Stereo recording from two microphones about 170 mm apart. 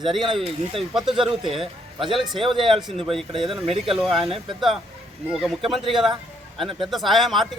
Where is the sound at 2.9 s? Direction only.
35° right (ahead or behind).